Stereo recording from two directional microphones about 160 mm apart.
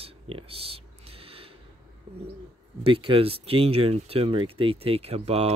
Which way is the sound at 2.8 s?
35° right (ahead or behind).